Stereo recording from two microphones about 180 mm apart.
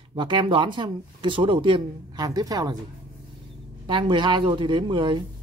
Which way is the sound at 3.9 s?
25° right (ahead or behind).